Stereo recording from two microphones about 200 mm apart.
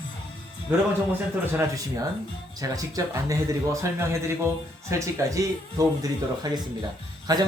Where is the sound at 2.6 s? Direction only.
15° right (ahead or behind).